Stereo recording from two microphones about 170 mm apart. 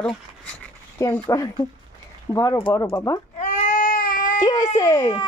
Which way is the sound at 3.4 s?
45° left (ahead or behind).